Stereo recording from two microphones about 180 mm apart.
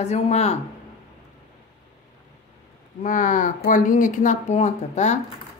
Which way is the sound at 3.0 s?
45° left (ahead or behind).